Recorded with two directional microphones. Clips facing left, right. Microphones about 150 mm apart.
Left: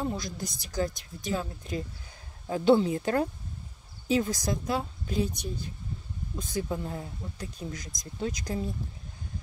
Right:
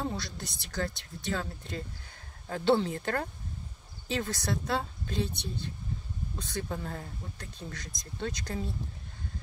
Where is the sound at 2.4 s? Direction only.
10° left (ahead or behind).